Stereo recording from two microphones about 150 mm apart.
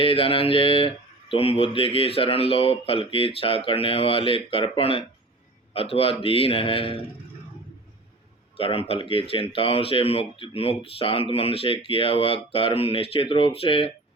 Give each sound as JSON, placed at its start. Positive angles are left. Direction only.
{"t": 0.0, "sound": "speech", "side_deg": 40}
{"t": 8.5, "sound": "speech", "side_deg": 40}